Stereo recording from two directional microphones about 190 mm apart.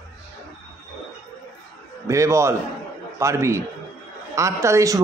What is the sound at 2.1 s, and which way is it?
A man's voice, 15° right (ahead or behind).